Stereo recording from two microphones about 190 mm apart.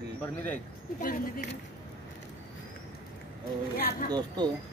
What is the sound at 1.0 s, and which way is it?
Speech, 50° left (ahead or behind).